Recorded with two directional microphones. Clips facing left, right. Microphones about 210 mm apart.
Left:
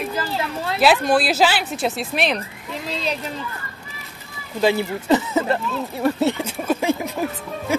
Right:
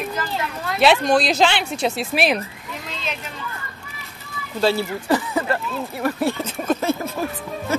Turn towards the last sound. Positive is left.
turn(degrees=15)  # may be behind; listen again after turning